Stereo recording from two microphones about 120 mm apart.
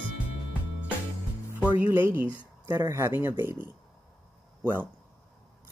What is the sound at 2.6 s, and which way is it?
Speech, 30° right (ahead or behind).